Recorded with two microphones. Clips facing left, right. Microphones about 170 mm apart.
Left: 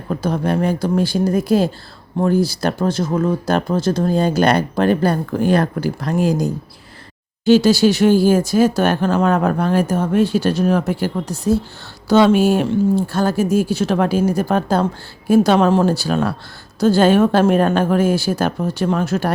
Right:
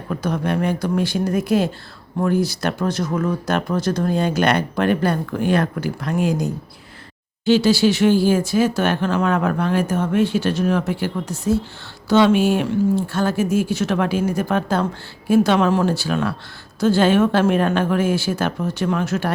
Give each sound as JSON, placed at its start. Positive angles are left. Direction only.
{"t": 0.1, "sound": "speech", "side_deg": 30}